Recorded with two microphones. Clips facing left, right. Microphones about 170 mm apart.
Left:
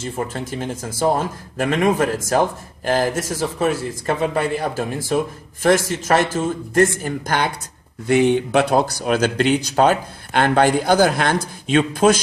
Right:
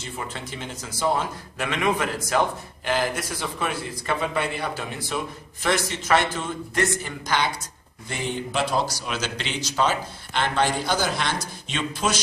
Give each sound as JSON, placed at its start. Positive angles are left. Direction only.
{"t": 0.0, "sound": "a man's voice", "side_deg": 45}
{"t": 8.1, "sound": "a man's voice", "side_deg": 65}